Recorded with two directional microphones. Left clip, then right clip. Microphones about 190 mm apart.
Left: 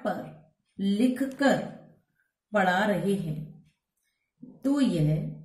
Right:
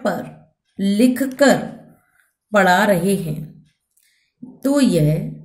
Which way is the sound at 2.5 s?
50° right (ahead or behind).